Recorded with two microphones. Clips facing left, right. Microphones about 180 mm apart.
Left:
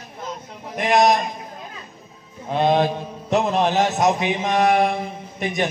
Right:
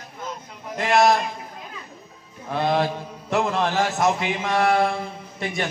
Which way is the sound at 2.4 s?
20° left (ahead or behind).